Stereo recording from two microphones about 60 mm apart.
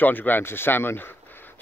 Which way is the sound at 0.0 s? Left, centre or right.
Left.